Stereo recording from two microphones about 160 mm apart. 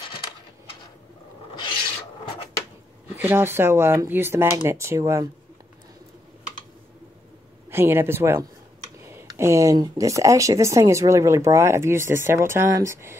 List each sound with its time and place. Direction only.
3.2 s speech: 15° right (ahead or behind)
7.7 s speech: 15° right (ahead or behind)